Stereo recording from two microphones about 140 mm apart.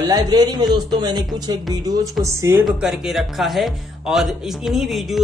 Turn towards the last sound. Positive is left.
turn(degrees=0)  # may be behind; listen again after turning